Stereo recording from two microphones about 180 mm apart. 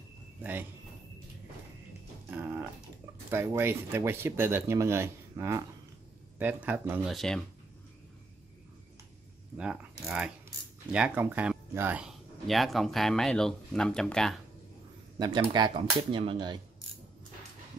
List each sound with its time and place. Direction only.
0.4 s speech: 10° right (ahead or behind)
3.3 s speech: 15° right (ahead or behind)
7.2 s speech: 5° left (ahead or behind)
9.6 s speech: 5° right (ahead or behind)
15.1 s speech: 25° right (ahead or behind)